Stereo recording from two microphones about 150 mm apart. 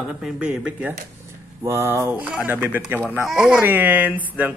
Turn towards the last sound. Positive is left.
turn(degrees=-10)  # may be behind; listen again after turning